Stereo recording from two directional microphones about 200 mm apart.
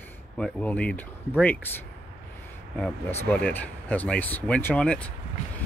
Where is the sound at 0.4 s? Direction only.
5° left (ahead or behind).